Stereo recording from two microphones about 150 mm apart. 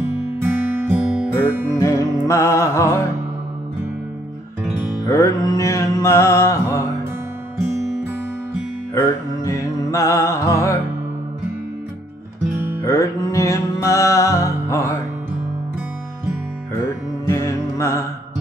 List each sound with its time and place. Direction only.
0.4 s music: 15° right (ahead or behind)
1.0 s music: 5° right (ahead or behind)
1.7 s music: 20° left (ahead or behind)
5.0 s music: 25° left (ahead or behind)
8.9 s music: 20° left (ahead or behind)
12.8 s music: 20° left (ahead or behind)
17.3 s music: 20° left (ahead or behind)